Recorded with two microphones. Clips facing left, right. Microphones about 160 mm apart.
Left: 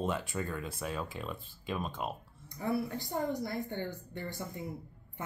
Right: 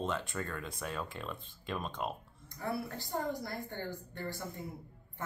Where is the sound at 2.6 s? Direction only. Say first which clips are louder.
Left 4 dB; 20° left (ahead or behind).